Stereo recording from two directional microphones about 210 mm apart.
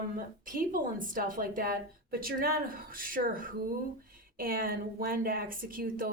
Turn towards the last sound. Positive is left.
turn(degrees=-40)  # may be behind; listen again after turning